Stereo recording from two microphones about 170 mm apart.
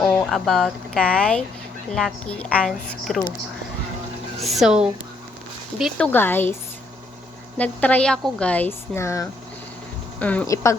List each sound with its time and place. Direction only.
0.0 s a woman's voice: 5° left (ahead or behind)
4.4 s speech: centre (ahead or behind)
5.8 s a woman's voice: 10° left (ahead or behind)
7.6 s a woman's voice: 10° left (ahead or behind)
10.4 s a woman's voice: 20° left (ahead or behind)